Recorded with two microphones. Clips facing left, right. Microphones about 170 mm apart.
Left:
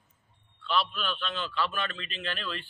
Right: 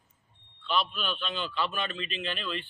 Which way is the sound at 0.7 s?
Centre (ahead or behind).